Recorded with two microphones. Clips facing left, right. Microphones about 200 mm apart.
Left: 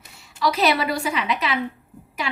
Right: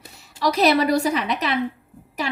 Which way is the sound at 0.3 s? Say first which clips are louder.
Right 3 dB; 40° right (ahead or behind).